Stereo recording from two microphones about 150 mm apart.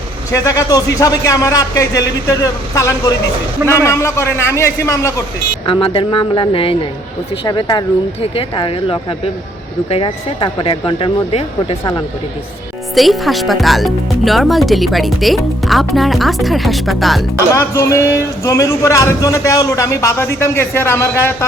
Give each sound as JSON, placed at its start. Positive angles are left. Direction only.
{"t": 0.3, "sound": "speech", "side_deg": 20}
{"t": 5.6, "sound": "speech", "side_deg": 35}
{"t": 12.9, "sound": "speech", "side_deg": 0}
{"t": 17.5, "sound": "speech", "side_deg": 20}